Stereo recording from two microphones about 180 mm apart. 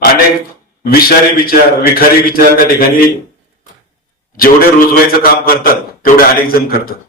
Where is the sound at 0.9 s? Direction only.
55° left (ahead or behind).